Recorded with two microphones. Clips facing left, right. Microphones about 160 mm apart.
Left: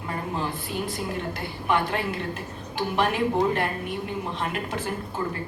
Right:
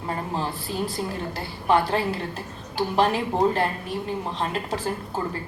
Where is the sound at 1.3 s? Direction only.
30° right (ahead or behind).